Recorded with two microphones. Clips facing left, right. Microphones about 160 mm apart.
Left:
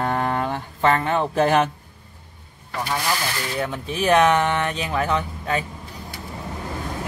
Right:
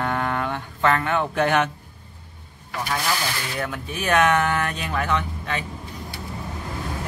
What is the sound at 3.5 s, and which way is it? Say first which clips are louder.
Speech: left 4 dB; 25° left (ahead or behind).